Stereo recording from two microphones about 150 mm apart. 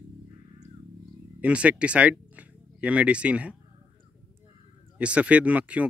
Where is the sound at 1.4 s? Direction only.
10° right (ahead or behind).